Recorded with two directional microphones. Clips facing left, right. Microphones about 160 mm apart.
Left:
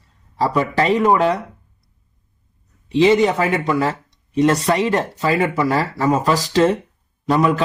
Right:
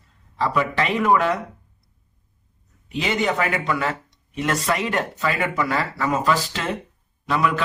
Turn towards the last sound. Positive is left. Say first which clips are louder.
# left 5 dB
turn(degrees=35)  # may be behind; listen again after turning